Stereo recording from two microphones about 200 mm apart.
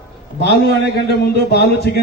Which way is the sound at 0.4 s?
55° left (ahead or behind).